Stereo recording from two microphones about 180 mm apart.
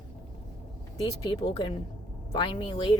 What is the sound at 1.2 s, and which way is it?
Speech, 25° left (ahead or behind).